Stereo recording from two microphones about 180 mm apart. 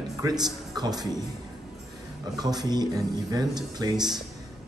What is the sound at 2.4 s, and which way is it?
Speech, 20° right (ahead or behind).